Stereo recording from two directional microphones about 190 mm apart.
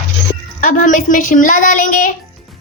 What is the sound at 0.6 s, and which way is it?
A woman's voice, 45° left (ahead or behind).